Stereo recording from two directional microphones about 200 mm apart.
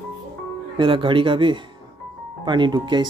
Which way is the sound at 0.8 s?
25° right (ahead or behind).